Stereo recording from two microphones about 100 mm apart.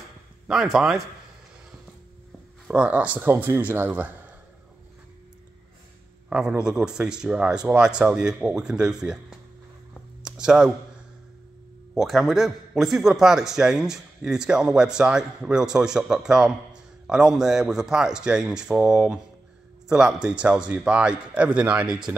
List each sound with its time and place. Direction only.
0.5 s a man's voice: 5° right (ahead or behind)
2.7 s a man's voice: 10° right (ahead or behind)
6.2 s a man's voice: 10° right (ahead or behind)
10.2 s a sound: 5° right (ahead or behind)
12.0 s a man's voice: centre (ahead or behind)